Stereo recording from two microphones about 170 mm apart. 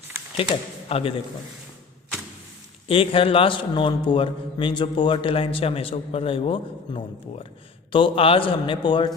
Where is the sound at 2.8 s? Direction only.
35° left (ahead or behind).